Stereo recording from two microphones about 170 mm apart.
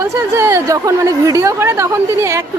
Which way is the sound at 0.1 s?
15° right (ahead or behind).